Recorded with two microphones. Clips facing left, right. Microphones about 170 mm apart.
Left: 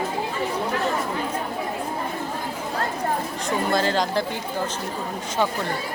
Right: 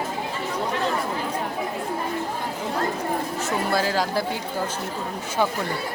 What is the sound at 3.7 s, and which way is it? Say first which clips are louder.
Speech: left 2 dB; 5° right (ahead or behind).